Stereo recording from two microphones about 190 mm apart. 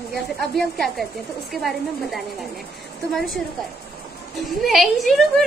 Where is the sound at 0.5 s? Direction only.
Centre (ahead or behind).